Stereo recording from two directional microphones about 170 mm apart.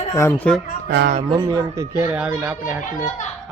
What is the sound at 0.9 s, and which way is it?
Speech, 80° right.